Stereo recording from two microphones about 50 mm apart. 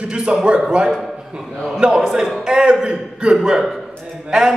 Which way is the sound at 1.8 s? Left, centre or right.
Right.